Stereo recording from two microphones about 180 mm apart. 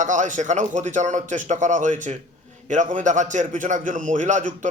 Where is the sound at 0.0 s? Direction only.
45° right (ahead or behind).